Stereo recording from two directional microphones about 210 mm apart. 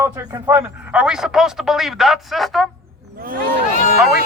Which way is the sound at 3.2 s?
40° right (ahead or behind).